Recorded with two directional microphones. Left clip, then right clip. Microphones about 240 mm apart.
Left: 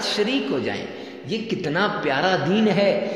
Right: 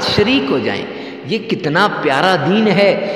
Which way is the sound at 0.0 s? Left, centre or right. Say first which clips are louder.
Right 9 dB; right.